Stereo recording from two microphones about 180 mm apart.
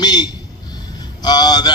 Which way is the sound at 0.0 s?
20° left (ahead or behind).